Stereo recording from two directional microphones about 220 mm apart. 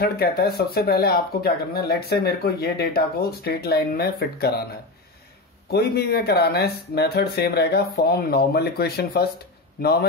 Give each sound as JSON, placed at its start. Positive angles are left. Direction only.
{"t": 0.0, "sound": "speech", "side_deg": 45}
{"t": 5.7, "sound": "a man's voice", "side_deg": 45}